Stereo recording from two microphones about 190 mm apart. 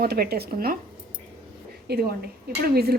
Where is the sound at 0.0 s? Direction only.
55° right (ahead or behind).